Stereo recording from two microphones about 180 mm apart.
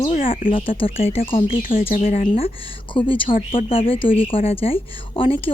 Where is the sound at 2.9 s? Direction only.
30° left (ahead or behind).